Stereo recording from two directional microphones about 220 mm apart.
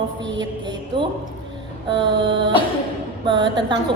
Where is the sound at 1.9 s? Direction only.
20° right (ahead or behind).